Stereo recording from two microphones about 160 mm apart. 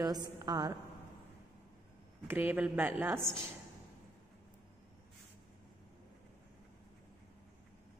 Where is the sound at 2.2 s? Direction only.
10° right (ahead or behind).